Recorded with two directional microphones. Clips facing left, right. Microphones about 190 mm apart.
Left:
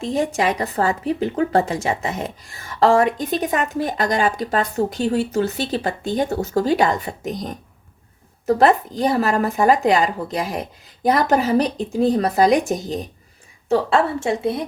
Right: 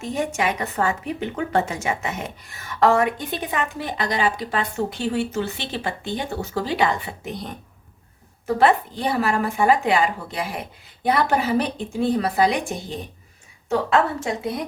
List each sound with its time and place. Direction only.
0.0 s speech: 35° left (ahead or behind)
13.7 s a woman's voice: 30° left (ahead or behind)